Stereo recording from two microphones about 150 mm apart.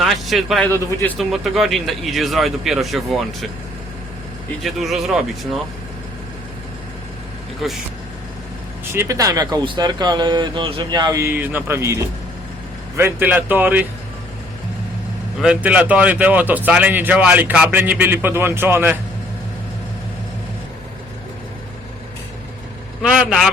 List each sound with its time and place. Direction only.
0.0 s speech: centre (ahead or behind)
0.7 s a man's voice: 15° left (ahead or behind)
1.2 s speech: centre (ahead or behind)
4.6 s speech: centre (ahead or behind)
7.6 s speech: centre (ahead or behind)
8.9 s a man's voice: 20° right (ahead or behind)
15.4 s a man's voice: 5° right (ahead or behind)
23.0 s speech: 5° right (ahead or behind)